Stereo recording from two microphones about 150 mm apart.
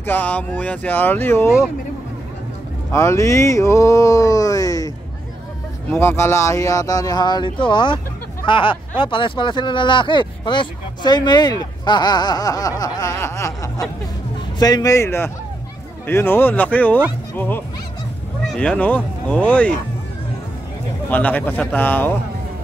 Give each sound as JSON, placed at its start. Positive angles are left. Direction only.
{"t": 0.0, "sound": "speech", "side_deg": 10}
{"t": 2.9, "sound": "speech", "side_deg": 20}
{"t": 21.1, "sound": "speech", "side_deg": 10}